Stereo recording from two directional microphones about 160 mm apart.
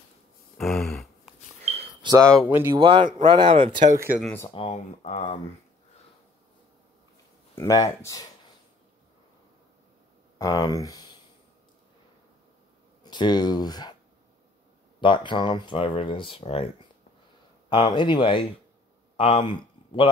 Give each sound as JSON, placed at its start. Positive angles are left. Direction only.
{"t": 0.6, "sound": "a sound", "side_deg": 0}
{"t": 1.6, "sound": "a sound", "side_deg": -40}
{"t": 2.3, "sound": "speech", "side_deg": -15}
{"t": 2.7, "sound": "a man's voice", "side_deg": -30}
{"t": 3.9, "sound": "speech", "side_deg": -15}
{"t": 4.6, "sound": "speech", "side_deg": 45}
{"t": 7.5, "sound": "speech", "side_deg": 20}
{"t": 10.4, "sound": "speech", "side_deg": 25}
{"t": 13.0, "sound": "speech", "side_deg": 25}
{"t": 15.0, "sound": "speech", "side_deg": 30}